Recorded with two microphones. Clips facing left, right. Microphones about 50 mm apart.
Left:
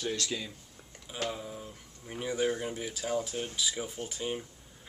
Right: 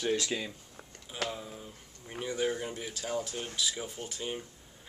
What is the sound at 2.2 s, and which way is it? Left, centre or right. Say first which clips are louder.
Speech: left 1 dB; centre.